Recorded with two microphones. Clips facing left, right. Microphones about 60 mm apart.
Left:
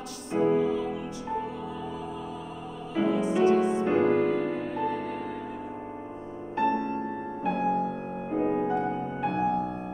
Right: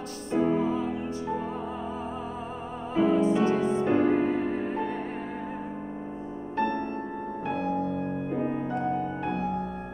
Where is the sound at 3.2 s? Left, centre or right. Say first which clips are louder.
Left 1 dB; left.